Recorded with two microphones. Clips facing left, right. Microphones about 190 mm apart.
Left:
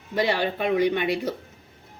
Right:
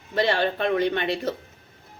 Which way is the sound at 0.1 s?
15° left (ahead or behind).